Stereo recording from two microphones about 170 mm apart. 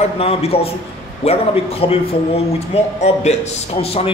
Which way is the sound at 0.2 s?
35° left (ahead or behind).